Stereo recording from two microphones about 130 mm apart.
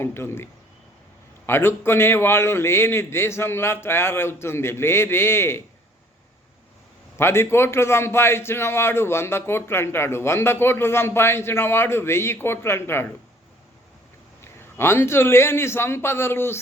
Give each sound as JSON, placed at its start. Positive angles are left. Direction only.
{"t": 0.0, "sound": "a man's voice", "side_deg": 20}
{"t": 1.5, "sound": "a man's voice", "side_deg": 20}
{"t": 7.2, "sound": "a man's voice", "side_deg": 20}
{"t": 14.4, "sound": "a man's voice", "side_deg": 20}